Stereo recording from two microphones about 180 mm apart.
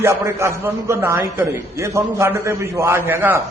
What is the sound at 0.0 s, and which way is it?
A man's voice, 15° right (ahead or behind).